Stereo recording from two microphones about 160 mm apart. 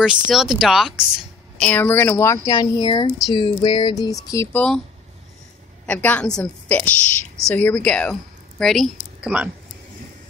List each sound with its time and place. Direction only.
0.0 s speech: centre (ahead or behind)
1.6 s speech: 10° left (ahead or behind)
5.9 s a woman's voice: 10° left (ahead or behind)